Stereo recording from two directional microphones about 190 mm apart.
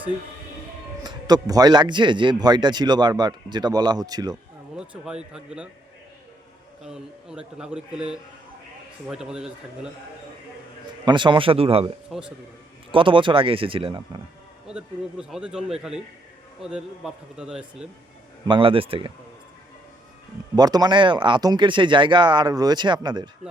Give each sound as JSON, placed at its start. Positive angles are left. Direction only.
{"t": 1.0, "sound": "a man's voice", "side_deg": -20}
{"t": 4.8, "sound": "a man's voice", "side_deg": -5}
{"t": 6.8, "sound": "a man's voice", "side_deg": -5}
{"t": 11.0, "sound": "a man's voice", "side_deg": -25}
{"t": 12.1, "sound": "a man's voice", "side_deg": 0}
{"t": 12.9, "sound": "a man's voice", "side_deg": -25}
{"t": 14.7, "sound": "a man's voice", "side_deg": -5}
{"t": 18.4, "sound": "a man's voice", "side_deg": -25}
{"t": 20.6, "sound": "a man's voice", "side_deg": -20}